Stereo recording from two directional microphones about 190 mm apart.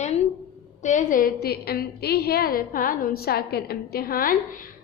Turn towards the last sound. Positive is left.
turn(degrees=50)  # may be behind; listen again after turning